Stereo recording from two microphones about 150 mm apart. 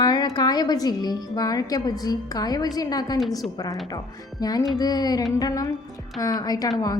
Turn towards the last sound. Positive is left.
turn(degrees=25)  # may be behind; listen again after turning